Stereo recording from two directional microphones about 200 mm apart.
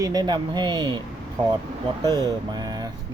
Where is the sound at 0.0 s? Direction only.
20° right (ahead or behind).